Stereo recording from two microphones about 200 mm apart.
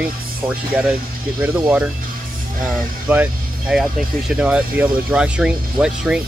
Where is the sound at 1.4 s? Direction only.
5° right (ahead or behind).